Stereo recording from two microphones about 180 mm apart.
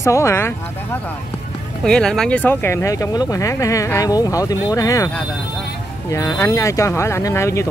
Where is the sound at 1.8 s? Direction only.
5° left (ahead or behind).